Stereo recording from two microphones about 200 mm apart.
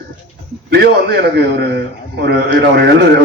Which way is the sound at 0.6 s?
60° right (ahead or behind).